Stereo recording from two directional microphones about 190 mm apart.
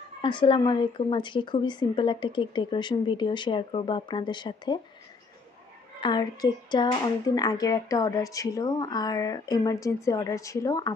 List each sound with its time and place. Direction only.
0.2 s speech: 25° left (ahead or behind)
5.9 s speech: 25° left (ahead or behind)